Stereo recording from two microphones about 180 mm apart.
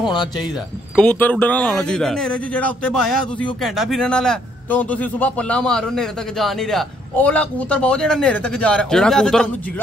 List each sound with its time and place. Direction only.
0.1 s speech: 25° left (ahead or behind)
0.9 s a man's voice: 5° left (ahead or behind)